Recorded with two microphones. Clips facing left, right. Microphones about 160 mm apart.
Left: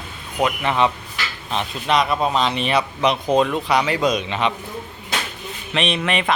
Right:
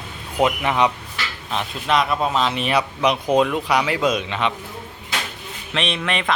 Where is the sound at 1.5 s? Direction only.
Centre (ahead or behind).